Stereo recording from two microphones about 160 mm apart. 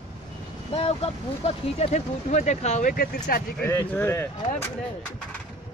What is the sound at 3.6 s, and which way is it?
Speech, 15° left (ahead or behind).